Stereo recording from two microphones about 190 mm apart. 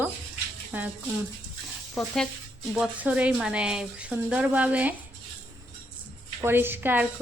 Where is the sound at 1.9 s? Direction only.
5° left (ahead or behind).